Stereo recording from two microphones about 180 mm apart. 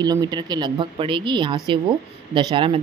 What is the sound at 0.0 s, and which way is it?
A woman's voice, 20° right (ahead or behind).